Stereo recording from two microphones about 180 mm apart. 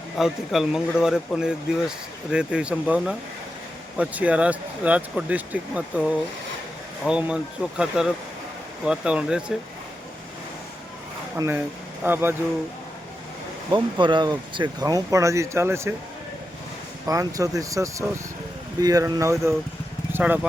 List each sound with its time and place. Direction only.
0.2 s speech: centre (ahead or behind)
7.0 s speech: 5° right (ahead or behind)
11.3 s speech: 15° right (ahead or behind)
13.7 s speech: 25° right (ahead or behind)
17.1 s speech: 20° right (ahead or behind)